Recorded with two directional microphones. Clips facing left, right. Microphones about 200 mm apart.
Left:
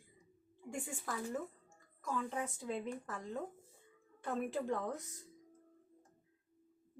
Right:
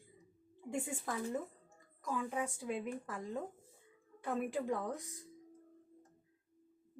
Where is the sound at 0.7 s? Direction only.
20° right (ahead or behind).